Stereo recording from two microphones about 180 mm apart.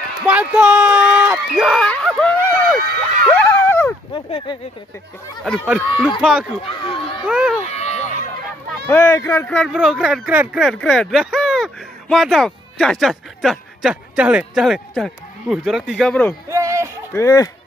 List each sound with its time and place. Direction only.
0.2 s a sound: 5° right (ahead or behind); by 3.9 s 10° left (ahead or behind)
4.1 s speech: 25° left (ahead or behind)
5.4 s speech: 5° left (ahead or behind)
6.2 s speech: 5° right (ahead or behind)
6.6 s speech: 30° left (ahead or behind)
7.2 s speech: 5° right (ahead or behind)
7.6 s a sound: 35° left (ahead or behind)
8.8 s speech: 10° left (ahead or behind)
9.6 s speech: centre (ahead or behind)
16.4 s a sound: 15° right (ahead or behind)
17.1 s speech: 20° left (ahead or behind)